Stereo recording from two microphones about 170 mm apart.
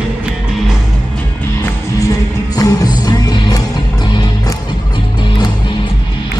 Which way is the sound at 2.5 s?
25° left (ahead or behind).